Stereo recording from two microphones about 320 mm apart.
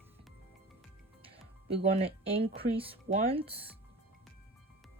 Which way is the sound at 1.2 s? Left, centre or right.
Centre.